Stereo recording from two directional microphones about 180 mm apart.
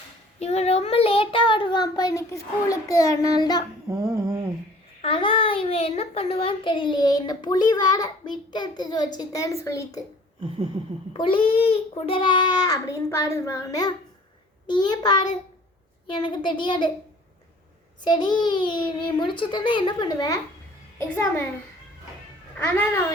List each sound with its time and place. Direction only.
0.3 s a child's voice: 35° left (ahead or behind); by 3.6 s 20° left (ahead or behind)
3.8 s a sound: 15° right (ahead or behind)
5.0 s a child's voice: 30° left (ahead or behind)
11.1 s a child's voice: 30° left (ahead or behind)
18.0 s a child's voice: 25° left (ahead or behind)
22.5 s a woman's voice: 10° left (ahead or behind)